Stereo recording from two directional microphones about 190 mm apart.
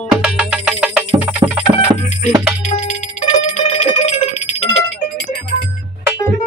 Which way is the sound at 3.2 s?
40° left (ahead or behind).